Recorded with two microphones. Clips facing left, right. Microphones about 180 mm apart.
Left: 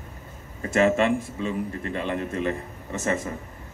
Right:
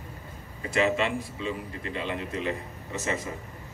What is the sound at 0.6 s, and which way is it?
A man's voice, 50° left (ahead or behind).